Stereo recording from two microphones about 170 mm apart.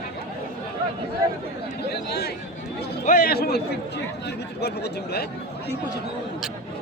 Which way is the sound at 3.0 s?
55° left (ahead or behind).